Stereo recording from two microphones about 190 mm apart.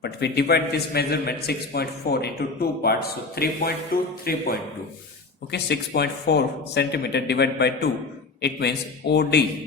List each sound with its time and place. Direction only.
0.0 s a man's voice: 60° left (ahead or behind)
5.5 s a man's voice: 60° left (ahead or behind)